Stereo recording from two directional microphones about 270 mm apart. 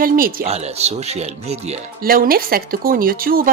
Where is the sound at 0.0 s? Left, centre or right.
Right.